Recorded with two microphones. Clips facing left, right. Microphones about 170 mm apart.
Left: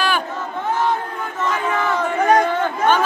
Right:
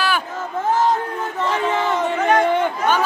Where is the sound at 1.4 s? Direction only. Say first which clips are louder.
Right 1 dB; 30° right (ahead or behind).